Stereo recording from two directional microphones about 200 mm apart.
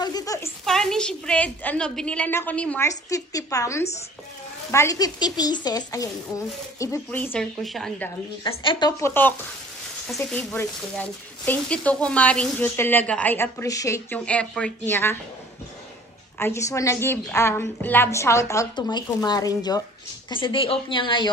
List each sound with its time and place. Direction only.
0.0 s a sound: 20° left (ahead or behind)
0.7 s a woman's voice: centre (ahead or behind)
2.9 s speech: 15° left (ahead or behind)
8.6 s speech: 20° left (ahead or behind)
10.1 s speech: 10° left (ahead or behind)
16.3 s speech: 15° left (ahead or behind)